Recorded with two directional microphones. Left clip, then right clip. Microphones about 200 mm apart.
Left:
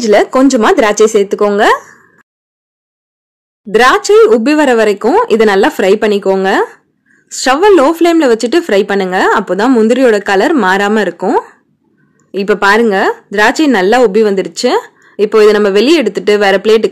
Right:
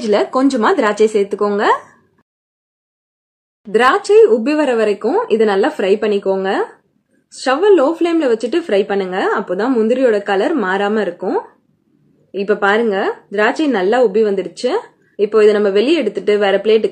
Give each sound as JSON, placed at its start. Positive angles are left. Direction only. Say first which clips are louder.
{"t": 0.0, "sound": "speech", "louder": "left 6 dB", "side_deg": 35}
{"t": 3.6, "sound": "speech", "louder": "left 5 dB", "side_deg": 45}